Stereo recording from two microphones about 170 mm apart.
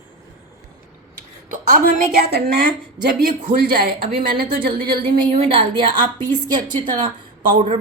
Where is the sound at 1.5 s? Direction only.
50° right (ahead or behind).